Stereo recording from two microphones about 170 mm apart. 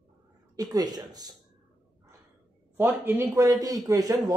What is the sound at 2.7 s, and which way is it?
A woman's voice, 15° right (ahead or behind).